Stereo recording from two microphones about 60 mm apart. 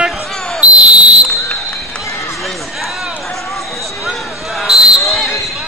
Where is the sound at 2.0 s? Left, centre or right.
Left.